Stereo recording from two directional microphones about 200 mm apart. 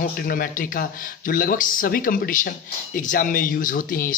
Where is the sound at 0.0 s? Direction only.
45° left (ahead or behind).